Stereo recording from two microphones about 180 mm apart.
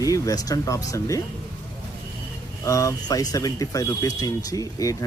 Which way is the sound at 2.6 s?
15° left (ahead or behind).